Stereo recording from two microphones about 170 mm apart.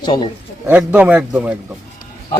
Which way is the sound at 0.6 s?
10° right (ahead or behind).